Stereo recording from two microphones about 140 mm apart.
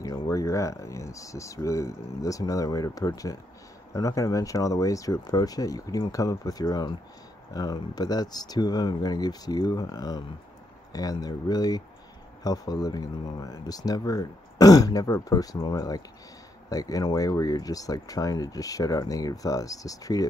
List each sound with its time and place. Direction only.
0.0 s speech: 25° left (ahead or behind)